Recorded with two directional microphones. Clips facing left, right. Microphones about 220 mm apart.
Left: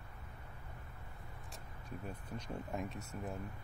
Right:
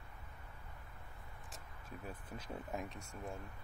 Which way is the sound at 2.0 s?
5° right (ahead or behind).